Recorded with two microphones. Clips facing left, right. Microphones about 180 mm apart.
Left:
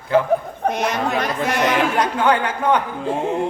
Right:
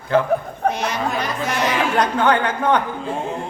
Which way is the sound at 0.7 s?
50° left (ahead or behind).